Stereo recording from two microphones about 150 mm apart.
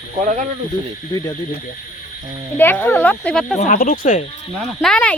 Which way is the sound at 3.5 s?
60° left (ahead or behind).